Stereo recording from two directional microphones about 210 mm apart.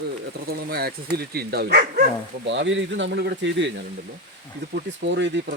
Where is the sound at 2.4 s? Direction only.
60° right (ahead or behind).